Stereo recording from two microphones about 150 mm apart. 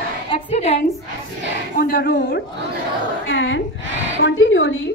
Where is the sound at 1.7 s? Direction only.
80° left.